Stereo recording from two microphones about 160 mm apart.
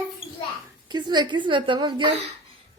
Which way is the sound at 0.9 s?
25° right (ahead or behind).